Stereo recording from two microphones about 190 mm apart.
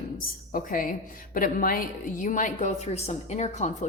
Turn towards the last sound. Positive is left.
turn(degrees=35)  # may be behind; listen again after turning